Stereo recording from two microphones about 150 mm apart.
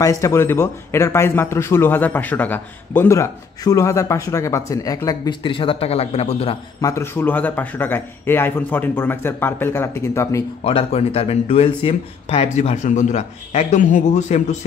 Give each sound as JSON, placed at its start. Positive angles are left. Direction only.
{"t": 0.0, "sound": "a man's voice", "side_deg": 20}
{"t": 6.8, "sound": "speech", "side_deg": 20}
{"t": 10.6, "sound": "speech", "side_deg": 40}